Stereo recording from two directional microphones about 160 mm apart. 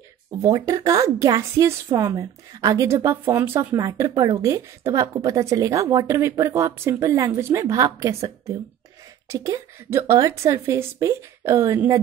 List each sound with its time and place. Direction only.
0.3 s a woman's voice: 20° right (ahead or behind)